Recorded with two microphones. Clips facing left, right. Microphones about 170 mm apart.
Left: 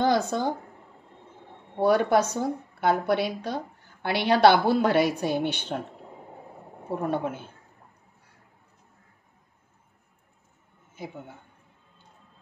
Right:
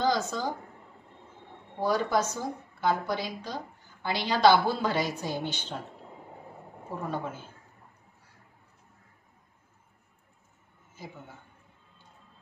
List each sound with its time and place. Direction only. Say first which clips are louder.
0.0 s speech: left 4 dB; 60° left (ahead or behind)
1.8 s speech: left 6 dB; 60° left (ahead or behind)
7.1 s speech: left 6 dB; 65° left (ahead or behind)